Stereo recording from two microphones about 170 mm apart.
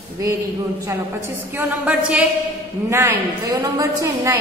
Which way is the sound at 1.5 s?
10° right (ahead or behind).